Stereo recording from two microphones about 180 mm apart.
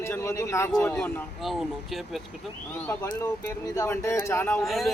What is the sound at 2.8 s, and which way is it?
A man's voice, 15° left (ahead or behind).